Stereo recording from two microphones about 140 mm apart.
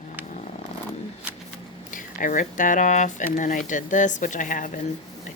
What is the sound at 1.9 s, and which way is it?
Speech, 70° left (ahead or behind).